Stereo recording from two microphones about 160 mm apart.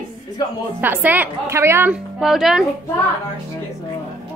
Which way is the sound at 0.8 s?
10° right (ahead or behind).